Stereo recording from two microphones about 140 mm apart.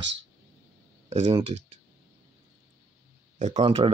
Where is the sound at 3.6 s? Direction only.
40° right (ahead or behind).